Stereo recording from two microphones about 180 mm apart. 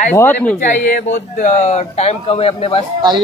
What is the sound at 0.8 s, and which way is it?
A man's voice, 50° left (ahead or behind).